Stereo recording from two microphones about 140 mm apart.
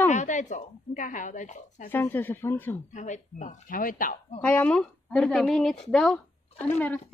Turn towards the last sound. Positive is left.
turn(degrees=10)  # may be behind; listen again after turning